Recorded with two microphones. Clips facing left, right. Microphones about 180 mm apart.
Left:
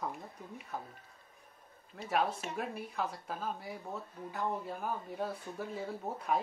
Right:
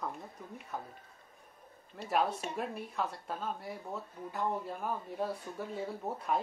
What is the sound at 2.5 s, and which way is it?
Speech, centre (ahead or behind).